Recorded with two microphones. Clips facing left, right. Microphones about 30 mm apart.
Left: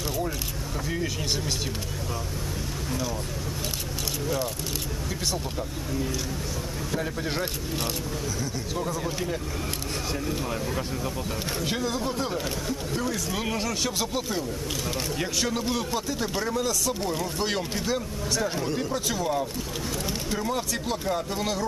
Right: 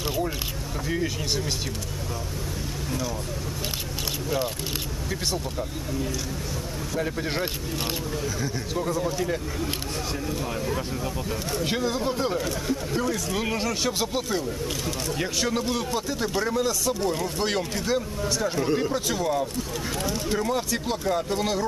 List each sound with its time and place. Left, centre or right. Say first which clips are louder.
0.8 s speech: right 2 dB; centre
7.0 s speech: right 3 dB; centre
8.7 s speech: right 4 dB; centre
11.6 s speech: right 3 dB; centre